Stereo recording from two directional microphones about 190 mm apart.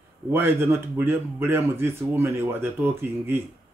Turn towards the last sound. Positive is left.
turn(degrees=-10)  # may be behind; listen again after turning